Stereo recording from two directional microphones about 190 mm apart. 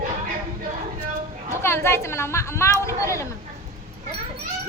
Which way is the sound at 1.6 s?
15° left (ahead or behind).